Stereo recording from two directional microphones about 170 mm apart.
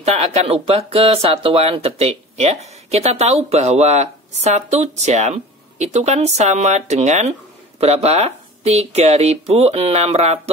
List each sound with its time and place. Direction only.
0.0 s speech: 40° right (ahead or behind)